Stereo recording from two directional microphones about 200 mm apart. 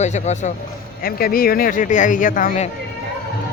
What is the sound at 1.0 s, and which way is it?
Speech, 45° left (ahead or behind).